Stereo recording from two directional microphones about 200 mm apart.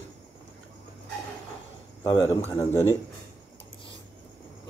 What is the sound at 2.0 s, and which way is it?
Speech, 15° left (ahead or behind).